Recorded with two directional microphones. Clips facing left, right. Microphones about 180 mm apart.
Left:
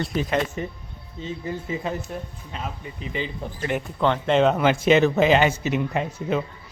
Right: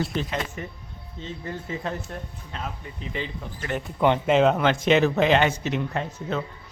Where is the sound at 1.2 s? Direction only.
10° left (ahead or behind).